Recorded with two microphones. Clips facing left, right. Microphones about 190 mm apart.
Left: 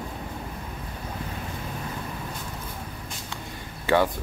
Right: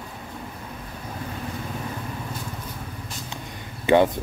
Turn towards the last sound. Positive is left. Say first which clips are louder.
# right 4 dB
turn(degrees=-20)  # may be behind; listen again after turning